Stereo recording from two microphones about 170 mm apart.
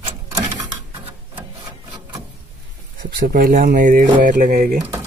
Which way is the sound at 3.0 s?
60° right (ahead or behind).